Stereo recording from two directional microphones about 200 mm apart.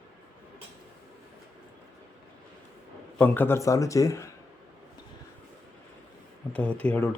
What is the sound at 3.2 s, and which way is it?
Speech, 10° left (ahead or behind).